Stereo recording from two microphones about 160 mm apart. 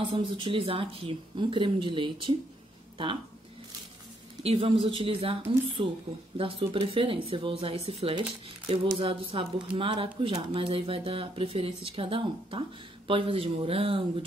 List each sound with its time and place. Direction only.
0.0 s speech: 30° right (ahead or behind)
4.4 s speech: 40° right (ahead or behind)